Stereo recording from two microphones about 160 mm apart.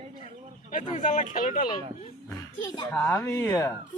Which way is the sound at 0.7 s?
55° left (ahead or behind).